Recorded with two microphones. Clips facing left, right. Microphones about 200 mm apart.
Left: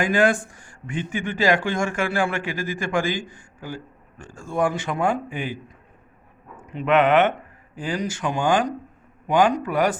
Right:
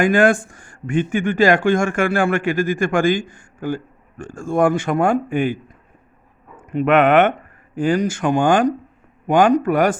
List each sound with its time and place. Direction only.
0.0 s speech: 50° right (ahead or behind)
6.6 s speech: 50° right (ahead or behind)